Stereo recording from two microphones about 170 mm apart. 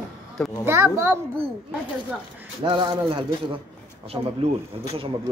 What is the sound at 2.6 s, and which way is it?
A man's voice, 30° right (ahead or behind).